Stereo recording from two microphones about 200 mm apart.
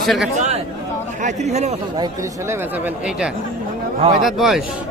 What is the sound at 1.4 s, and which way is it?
Speech, 35° right (ahead or behind).